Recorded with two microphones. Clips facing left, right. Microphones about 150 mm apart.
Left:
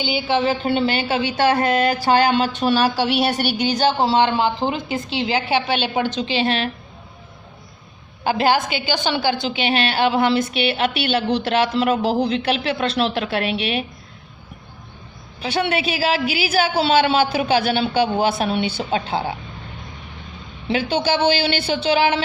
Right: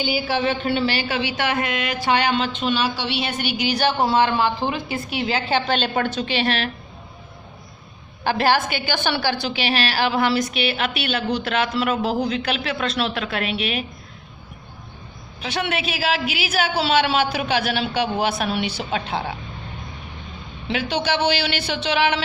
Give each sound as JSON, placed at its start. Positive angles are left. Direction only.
{"t": 0.3, "sound": "a woman's voice", "side_deg": 30}
{"t": 3.9, "sound": "a woman's voice", "side_deg": 20}
{"t": 6.1, "sound": "a woman's voice", "side_deg": 25}
{"t": 8.2, "sound": "a woman's voice", "side_deg": 20}
{"t": 15.4, "sound": "a woman's voice", "side_deg": 30}
{"t": 20.7, "sound": "a woman's voice", "side_deg": 30}